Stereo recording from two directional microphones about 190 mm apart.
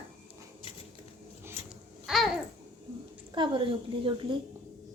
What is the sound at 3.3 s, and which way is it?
A woman's voice, 25° right (ahead or behind).